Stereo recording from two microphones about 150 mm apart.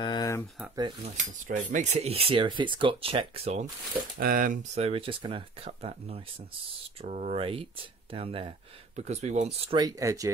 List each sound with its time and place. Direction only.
0.0 s a sound: 25° left (ahead or behind)
1.1 s speech: 55° right (ahead or behind)
4.2 s speech: 70° right (ahead or behind)
4.7 s speech: 40° right (ahead or behind)
9.7 s speech: 25° right (ahead or behind)